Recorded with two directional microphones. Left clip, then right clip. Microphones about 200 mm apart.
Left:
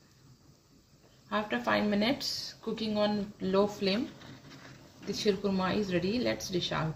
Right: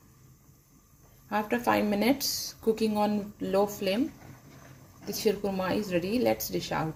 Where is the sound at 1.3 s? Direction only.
40° right (ahead or behind).